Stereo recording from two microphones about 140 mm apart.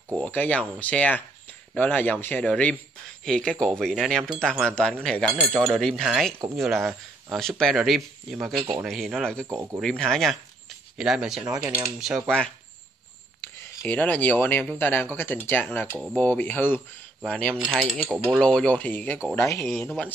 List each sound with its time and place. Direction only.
0.2 s a man's voice: 10° left (ahead or behind)
3.3 s cutlery: 5° left (ahead or behind)
9.5 s speech: 25° right (ahead or behind)
9.8 s cutlery: 5° left (ahead or behind)
11.4 s speech: 25° right (ahead or behind)
12.0 s cutlery: 5° right (ahead or behind)
13.4 s a man's voice: 15° left (ahead or behind)